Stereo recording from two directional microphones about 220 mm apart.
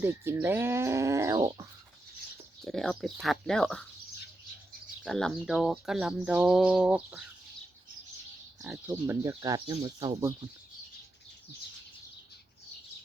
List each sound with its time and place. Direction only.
0.0 s speech: 10° right (ahead or behind)
2.6 s speech: centre (ahead or behind)
5.0 s speech: centre (ahead or behind)
8.6 s speech: 10° right (ahead or behind)